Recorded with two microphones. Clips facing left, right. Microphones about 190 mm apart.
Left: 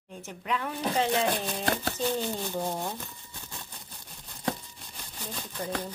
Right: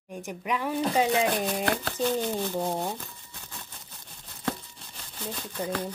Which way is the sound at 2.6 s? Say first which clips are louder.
Right 3 dB; 20° right (ahead or behind).